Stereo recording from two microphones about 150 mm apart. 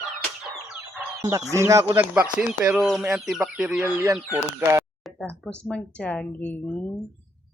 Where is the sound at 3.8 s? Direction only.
10° right (ahead or behind).